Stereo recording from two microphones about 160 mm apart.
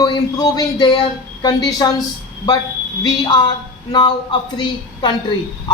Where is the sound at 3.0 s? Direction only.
30° left (ahead or behind).